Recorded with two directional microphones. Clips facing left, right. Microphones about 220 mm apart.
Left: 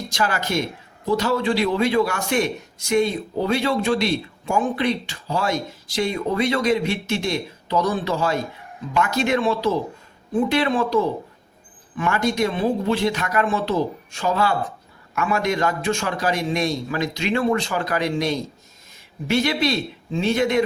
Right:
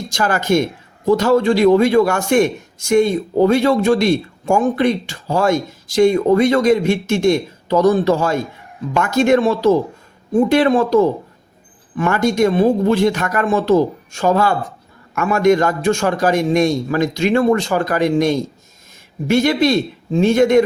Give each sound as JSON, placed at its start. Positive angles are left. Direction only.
{"t": 0.1, "sound": "a man's voice", "side_deg": -45}